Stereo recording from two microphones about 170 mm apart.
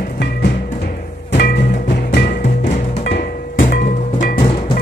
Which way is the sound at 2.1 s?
90° left.